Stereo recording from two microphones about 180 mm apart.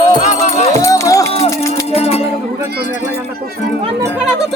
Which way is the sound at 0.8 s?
15° left (ahead or behind).